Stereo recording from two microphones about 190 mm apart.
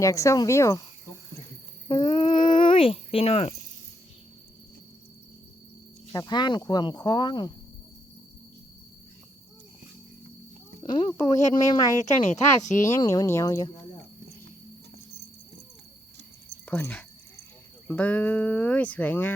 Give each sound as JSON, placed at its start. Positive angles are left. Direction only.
{"t": 0.0, "sound": "speech", "side_deg": 15}
{"t": 1.9, "sound": "a sound", "side_deg": 20}
{"t": 2.5, "sound": "speech", "side_deg": 25}
{"t": 6.1, "sound": "speech", "side_deg": 25}
{"t": 10.8, "sound": "speech", "side_deg": 20}
{"t": 11.9, "sound": "speech", "side_deg": 40}
{"t": 13.0, "sound": "speech", "side_deg": 20}
{"t": 16.6, "sound": "a sound", "side_deg": 10}
{"t": 17.8, "sound": "speech", "side_deg": 5}